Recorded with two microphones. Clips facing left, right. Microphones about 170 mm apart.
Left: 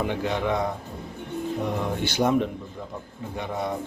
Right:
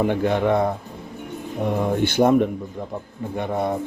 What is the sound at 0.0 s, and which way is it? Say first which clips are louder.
Speech: right 6 dB; 50° right (ahead or behind).